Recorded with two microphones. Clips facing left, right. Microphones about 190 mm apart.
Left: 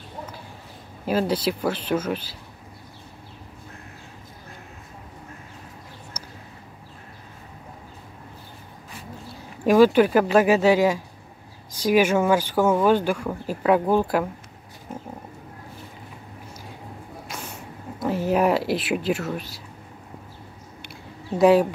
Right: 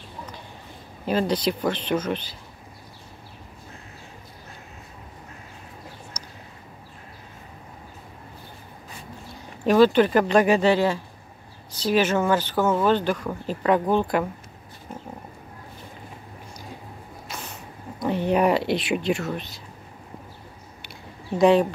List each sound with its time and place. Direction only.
1.0 s speech: 5° left (ahead or behind)
6.2 s a sound: 10° left (ahead or behind)
9.7 s speech: 10° left (ahead or behind)
17.3 s speech: 10° left (ahead or behind)
21.4 s speech: 5° left (ahead or behind)